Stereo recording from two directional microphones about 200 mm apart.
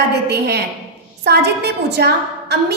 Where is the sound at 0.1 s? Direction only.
55° right (ahead or behind).